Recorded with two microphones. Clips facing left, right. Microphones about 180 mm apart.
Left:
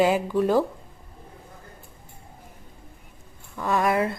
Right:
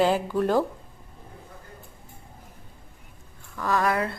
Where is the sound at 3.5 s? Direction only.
25° left (ahead or behind).